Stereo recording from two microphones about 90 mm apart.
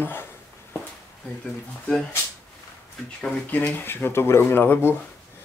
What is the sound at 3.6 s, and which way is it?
Speech, 25° left (ahead or behind).